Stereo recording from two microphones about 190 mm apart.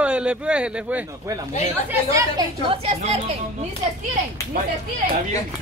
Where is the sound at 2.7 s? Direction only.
35° right (ahead or behind).